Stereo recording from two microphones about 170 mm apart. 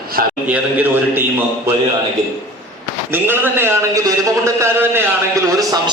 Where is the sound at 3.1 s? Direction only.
15° right (ahead or behind).